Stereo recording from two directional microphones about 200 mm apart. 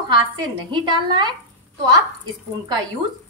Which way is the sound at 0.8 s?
20° right (ahead or behind).